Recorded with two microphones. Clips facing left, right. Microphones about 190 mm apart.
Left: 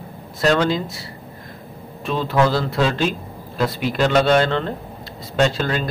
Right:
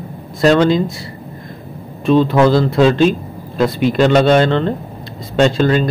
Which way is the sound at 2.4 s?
25° right (ahead or behind).